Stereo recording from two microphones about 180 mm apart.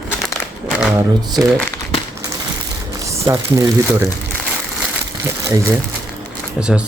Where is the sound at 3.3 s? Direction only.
15° right (ahead or behind).